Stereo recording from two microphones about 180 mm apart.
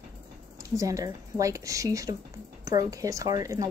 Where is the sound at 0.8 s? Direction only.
20° right (ahead or behind).